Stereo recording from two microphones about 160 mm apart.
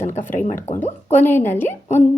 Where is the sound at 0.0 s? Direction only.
15° left (ahead or behind).